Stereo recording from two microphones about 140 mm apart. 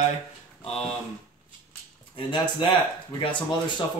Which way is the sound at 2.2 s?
35° left (ahead or behind).